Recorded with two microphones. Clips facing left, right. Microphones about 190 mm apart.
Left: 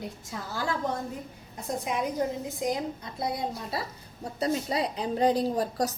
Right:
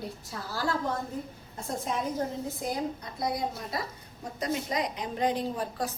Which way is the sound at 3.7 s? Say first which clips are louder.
Left 1 dB; 30° left (ahead or behind).